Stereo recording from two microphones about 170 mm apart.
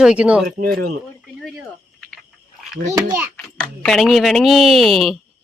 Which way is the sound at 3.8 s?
Centre (ahead or behind).